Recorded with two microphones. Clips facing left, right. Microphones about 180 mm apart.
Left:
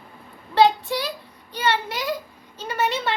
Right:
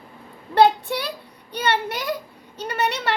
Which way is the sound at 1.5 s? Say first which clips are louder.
Right 1 dB; 55° right (ahead or behind).